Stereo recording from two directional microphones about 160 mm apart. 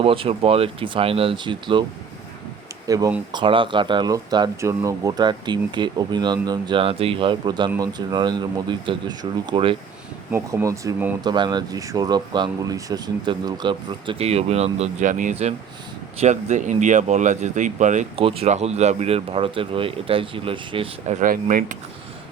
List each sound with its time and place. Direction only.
0.0 s speech: 35° right (ahead or behind)
2.8 s speech: 20° right (ahead or behind)
10.3 s speech: 20° right (ahead or behind)
11.2 s speech: 25° right (ahead or behind); by 18.0 s 50° right (ahead or behind)
18.2 s speech: 35° right (ahead or behind)
21.2 s speech: 55° right (ahead or behind)